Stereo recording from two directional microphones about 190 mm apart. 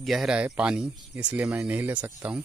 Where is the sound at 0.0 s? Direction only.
Centre (ahead or behind).